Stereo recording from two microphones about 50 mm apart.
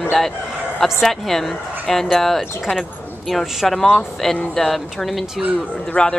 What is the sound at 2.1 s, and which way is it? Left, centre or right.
Speech, centre.